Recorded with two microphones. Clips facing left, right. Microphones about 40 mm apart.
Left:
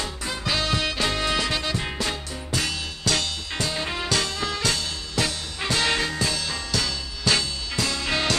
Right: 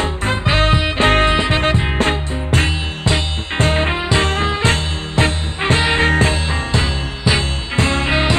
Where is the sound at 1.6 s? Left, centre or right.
Right.